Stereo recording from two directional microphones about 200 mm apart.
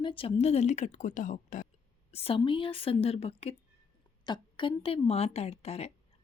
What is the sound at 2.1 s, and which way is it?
A woman's voice, 30° left (ahead or behind).